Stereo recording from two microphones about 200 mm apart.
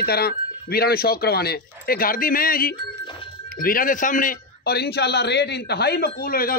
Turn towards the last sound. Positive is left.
turn(degrees=45)  # may be behind; listen again after turning